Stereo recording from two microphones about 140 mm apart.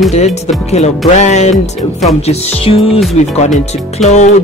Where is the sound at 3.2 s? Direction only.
55° left (ahead or behind).